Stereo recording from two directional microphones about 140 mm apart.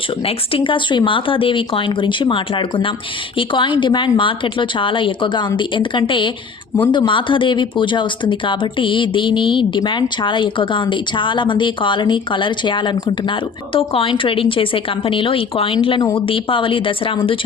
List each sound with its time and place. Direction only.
0.2 s speech: 40° left (ahead or behind)